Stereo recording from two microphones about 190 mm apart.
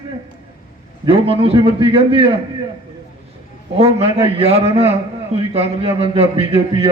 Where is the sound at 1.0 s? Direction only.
30° right (ahead or behind).